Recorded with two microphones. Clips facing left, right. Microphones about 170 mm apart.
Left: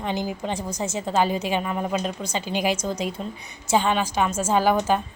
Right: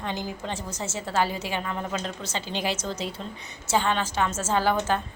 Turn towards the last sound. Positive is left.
turn(degrees=15)  # may be behind; listen again after turning